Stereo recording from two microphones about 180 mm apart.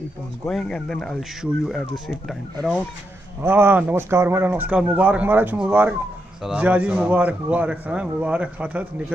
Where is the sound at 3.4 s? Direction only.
10° right (ahead or behind).